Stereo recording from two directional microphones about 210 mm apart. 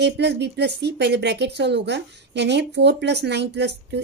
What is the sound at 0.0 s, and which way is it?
Speech, 55° right (ahead or behind).